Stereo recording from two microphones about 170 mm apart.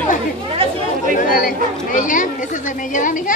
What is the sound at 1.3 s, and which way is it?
Speech, 55° left (ahead or behind).